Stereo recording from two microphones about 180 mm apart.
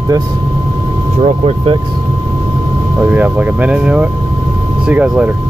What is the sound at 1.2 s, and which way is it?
Speech, 35° right (ahead or behind).